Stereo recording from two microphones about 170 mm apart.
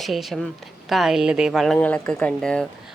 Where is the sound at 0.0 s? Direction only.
Centre (ahead or behind).